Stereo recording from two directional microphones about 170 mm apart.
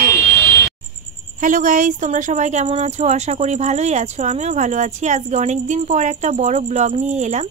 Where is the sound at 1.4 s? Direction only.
50° right (ahead or behind).